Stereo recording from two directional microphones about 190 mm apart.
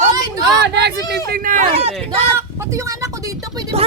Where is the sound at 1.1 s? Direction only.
50° right (ahead or behind).